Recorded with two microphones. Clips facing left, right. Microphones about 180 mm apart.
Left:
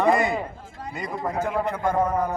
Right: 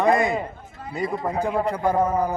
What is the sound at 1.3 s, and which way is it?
Speech, 15° right (ahead or behind).